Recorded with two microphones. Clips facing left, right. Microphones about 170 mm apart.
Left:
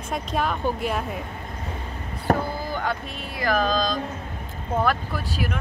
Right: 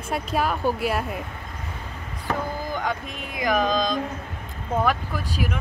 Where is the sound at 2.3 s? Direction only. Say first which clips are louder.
Left 5 dB; 50° left (ahead or behind).